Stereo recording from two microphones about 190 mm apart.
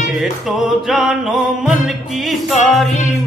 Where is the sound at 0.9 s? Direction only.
Centre (ahead or behind).